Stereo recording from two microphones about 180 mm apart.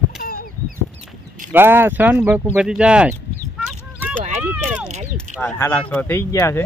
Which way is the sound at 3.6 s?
5° right (ahead or behind).